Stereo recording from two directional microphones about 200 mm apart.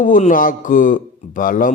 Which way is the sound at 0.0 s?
40° left (ahead or behind).